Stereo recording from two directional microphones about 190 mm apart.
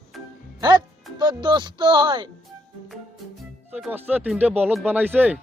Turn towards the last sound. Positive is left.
turn(degrees=-10)  # may be behind; listen again after turning